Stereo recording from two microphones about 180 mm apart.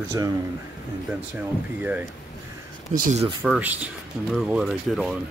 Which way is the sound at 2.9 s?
45° right (ahead or behind).